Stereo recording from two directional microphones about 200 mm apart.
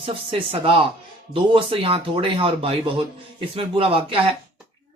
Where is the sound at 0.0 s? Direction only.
25° right (ahead or behind).